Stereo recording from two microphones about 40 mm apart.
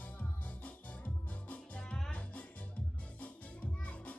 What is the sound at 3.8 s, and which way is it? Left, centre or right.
Music, left.